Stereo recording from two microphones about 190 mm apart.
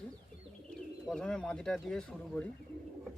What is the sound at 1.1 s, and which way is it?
Speech, 5° left (ahead or behind).